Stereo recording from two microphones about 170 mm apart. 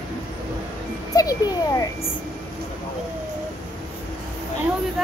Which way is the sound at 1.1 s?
20° left (ahead or behind).